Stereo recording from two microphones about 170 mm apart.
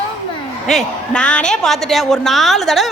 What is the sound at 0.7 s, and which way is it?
A woman's voice, 5° left (ahead or behind).